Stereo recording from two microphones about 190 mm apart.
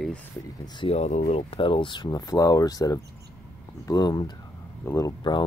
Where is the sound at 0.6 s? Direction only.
30° left (ahead or behind).